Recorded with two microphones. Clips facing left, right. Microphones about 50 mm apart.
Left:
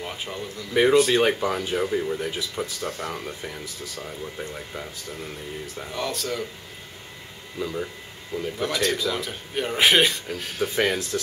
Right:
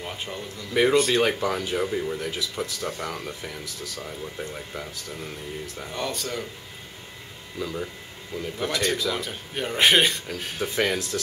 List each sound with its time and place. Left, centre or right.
0.0 s a man's voice: centre
3.6 s speech: left
4.0 s a man's voice: centre
7.5 s a man's voice: centre